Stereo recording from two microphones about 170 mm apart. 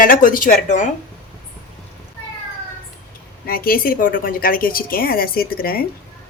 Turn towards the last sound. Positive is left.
turn(degrees=60)  # may be behind; listen again after turning